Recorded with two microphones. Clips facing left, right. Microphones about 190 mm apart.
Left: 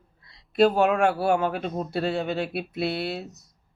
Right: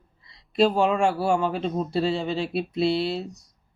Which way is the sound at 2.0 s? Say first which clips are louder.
Even; 55° left (ahead or behind).